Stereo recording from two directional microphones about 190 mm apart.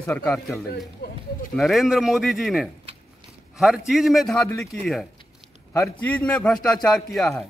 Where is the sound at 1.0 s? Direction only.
55° left (ahead or behind).